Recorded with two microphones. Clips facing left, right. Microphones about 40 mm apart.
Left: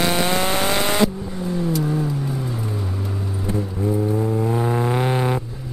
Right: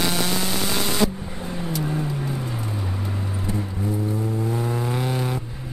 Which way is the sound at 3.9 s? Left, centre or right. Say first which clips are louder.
Left 6 dB; centre.